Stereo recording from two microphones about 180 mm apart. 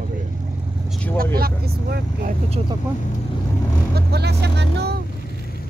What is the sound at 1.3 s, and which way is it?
Speech, 55° right (ahead or behind).